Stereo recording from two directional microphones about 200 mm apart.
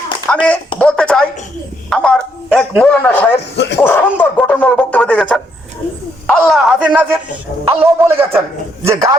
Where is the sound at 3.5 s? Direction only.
60° left (ahead or behind).